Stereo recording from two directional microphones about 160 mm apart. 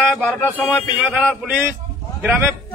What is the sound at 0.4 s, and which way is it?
Speech, 10° left (ahead or behind).